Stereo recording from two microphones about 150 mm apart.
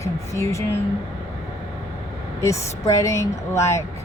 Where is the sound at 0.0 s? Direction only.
20° left (ahead or behind).